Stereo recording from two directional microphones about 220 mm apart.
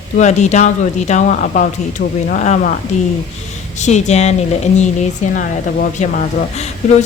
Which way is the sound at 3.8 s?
30° left (ahead or behind).